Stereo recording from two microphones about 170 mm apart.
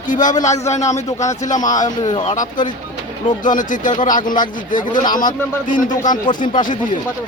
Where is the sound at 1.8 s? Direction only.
25° left (ahead or behind).